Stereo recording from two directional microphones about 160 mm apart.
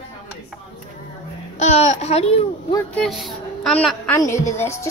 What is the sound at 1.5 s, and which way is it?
Speech, 45° left (ahead or behind).